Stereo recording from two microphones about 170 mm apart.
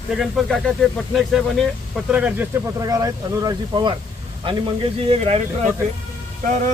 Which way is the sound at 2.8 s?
20° right (ahead or behind).